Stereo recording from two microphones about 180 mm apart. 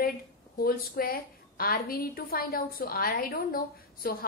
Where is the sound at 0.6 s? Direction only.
55° left (ahead or behind).